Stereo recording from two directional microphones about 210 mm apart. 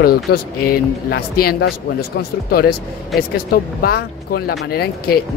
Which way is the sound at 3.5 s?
45° left (ahead or behind).